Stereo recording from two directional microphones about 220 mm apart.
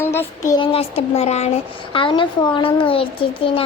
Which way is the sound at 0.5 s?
25° left (ahead or behind).